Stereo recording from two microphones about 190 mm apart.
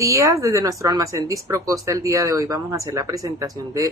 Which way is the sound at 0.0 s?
15° right (ahead or behind).